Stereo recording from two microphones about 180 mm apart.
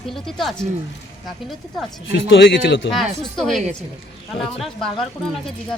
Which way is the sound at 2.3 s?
90° left.